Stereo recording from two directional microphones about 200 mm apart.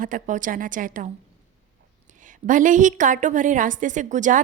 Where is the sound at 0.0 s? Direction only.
40° right (ahead or behind).